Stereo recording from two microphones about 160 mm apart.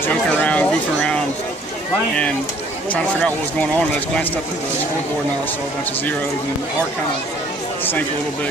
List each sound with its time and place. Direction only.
0.1 s speech: 10° left (ahead or behind)
2.9 s speech: 10° left (ahead or behind)